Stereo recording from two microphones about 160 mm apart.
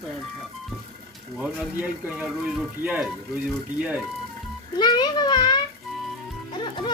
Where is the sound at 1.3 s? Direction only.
10° right (ahead or behind).